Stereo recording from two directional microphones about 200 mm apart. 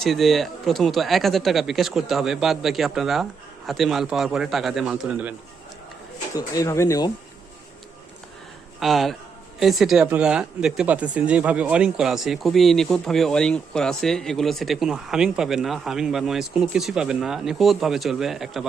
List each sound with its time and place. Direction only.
0.0 s speech: centre (ahead or behind)
6.3 s speech: 15° left (ahead or behind)
8.8 s speech: centre (ahead or behind)